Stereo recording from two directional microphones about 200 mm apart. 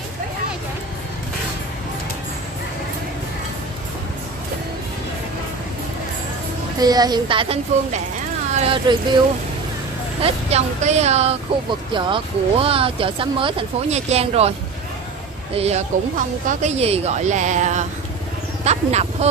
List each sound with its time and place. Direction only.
6.8 s speech: 20° right (ahead or behind)
10.2 s a woman's voice: 35° right (ahead or behind)
15.5 s a woman's voice: 30° right (ahead or behind)
18.6 s vehicle: 35° right (ahead or behind)